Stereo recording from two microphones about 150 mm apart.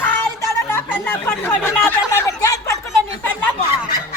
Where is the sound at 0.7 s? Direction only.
15° left (ahead or behind).